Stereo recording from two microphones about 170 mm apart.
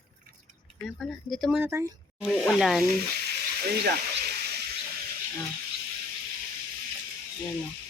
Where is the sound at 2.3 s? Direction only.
Centre (ahead or behind).